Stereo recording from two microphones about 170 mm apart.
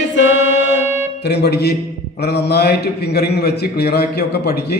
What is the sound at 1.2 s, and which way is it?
A man's voice, 75° left (ahead or behind).